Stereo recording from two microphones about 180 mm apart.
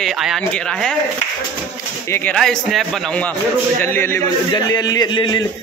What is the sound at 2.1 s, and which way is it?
Speech, 5° left (ahead or behind).